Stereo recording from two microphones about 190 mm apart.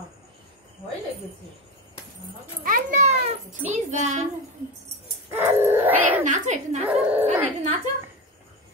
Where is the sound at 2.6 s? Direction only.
45° right (ahead or behind).